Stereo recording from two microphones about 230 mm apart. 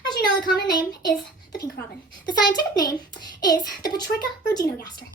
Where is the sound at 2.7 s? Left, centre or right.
Centre.